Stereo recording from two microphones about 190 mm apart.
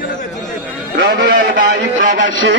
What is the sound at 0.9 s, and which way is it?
Speech, 65° right (ahead or behind).